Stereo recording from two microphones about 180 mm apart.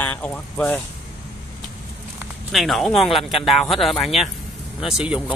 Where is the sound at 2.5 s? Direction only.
Centre (ahead or behind).